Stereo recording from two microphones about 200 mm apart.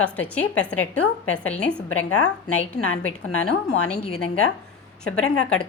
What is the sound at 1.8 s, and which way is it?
A woman's voice, 90° left.